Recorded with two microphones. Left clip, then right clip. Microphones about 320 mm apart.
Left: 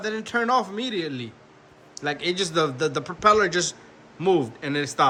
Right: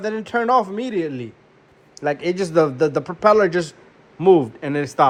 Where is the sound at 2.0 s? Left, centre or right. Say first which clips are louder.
Right 6 dB; centre.